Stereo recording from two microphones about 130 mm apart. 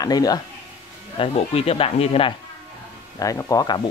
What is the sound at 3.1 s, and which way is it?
Speech, 25° left (ahead or behind).